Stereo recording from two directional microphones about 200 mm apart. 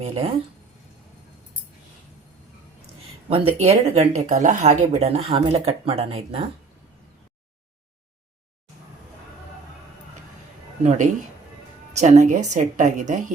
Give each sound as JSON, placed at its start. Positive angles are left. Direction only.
{"t": 0.0, "sound": "speech", "side_deg": -30}
{"t": 3.2, "sound": "speech", "side_deg": -30}
{"t": 10.8, "sound": "speech", "side_deg": -40}